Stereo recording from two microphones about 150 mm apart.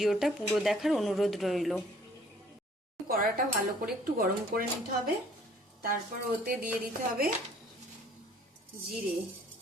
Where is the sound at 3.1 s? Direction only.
75° right (ahead or behind).